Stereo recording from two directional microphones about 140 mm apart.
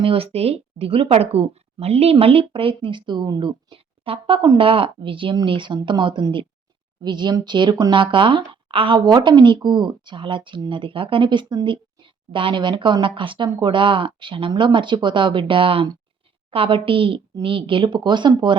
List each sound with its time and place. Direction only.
0.0 s speech: 40° right (ahead or behind)